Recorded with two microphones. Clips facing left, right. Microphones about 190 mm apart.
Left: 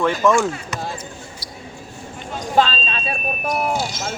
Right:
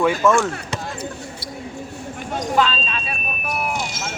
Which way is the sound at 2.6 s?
30° left (ahead or behind).